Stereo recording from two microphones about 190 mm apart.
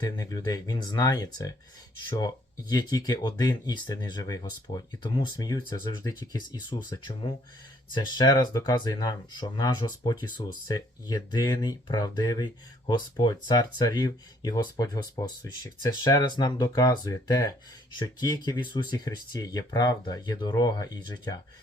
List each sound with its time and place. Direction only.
0.0 s speech: 20° left (ahead or behind)